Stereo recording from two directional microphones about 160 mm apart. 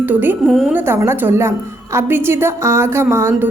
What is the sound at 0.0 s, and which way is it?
A woman's voice, 10° right (ahead or behind).